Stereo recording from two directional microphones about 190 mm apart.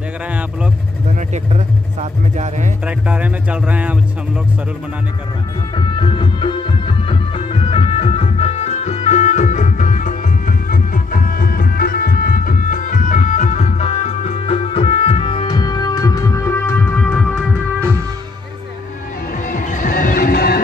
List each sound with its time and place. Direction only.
1.3 s speech: 35° right (ahead or behind)
3.1 s speech: 5° right (ahead or behind)
5.9 s music: 25° left (ahead or behind); by 17.5 s centre (ahead or behind)
17.7 s music: 15° right (ahead or behind)
19.3 s music: 45° left (ahead or behind)